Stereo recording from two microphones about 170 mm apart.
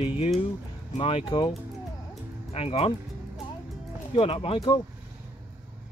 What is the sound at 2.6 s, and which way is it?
Speech, 35° left (ahead or behind).